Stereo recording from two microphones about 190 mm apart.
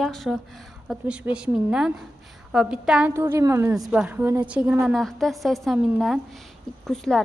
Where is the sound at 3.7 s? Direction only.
5° right (ahead or behind).